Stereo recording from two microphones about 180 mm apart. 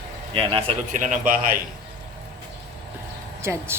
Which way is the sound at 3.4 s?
15° right (ahead or behind).